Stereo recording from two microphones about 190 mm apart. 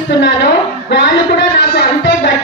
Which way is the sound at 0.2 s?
60° left (ahead or behind).